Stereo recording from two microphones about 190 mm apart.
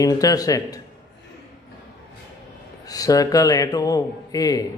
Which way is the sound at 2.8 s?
20° left (ahead or behind).